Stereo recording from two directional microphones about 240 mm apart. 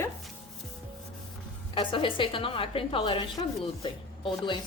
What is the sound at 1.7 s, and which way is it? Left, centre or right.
A woman's voice, left.